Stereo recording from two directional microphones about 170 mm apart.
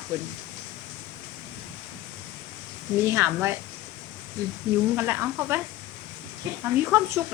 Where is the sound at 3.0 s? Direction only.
15° right (ahead or behind).